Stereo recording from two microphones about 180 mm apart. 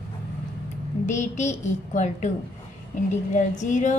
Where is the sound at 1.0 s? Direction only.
40° left (ahead or behind).